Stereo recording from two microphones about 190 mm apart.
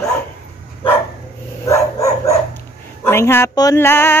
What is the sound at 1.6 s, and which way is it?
Dog, 15° left (ahead or behind).